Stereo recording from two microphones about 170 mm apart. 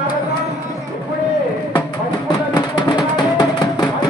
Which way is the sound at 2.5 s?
25° left (ahead or behind).